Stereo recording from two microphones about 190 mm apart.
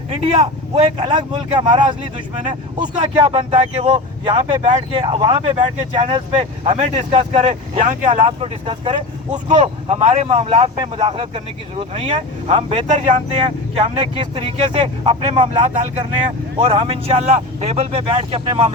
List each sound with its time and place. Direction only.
0.1 s speech: 30° right (ahead or behind)